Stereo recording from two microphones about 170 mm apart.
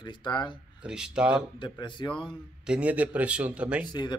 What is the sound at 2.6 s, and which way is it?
A man's voice, 5° right (ahead or behind).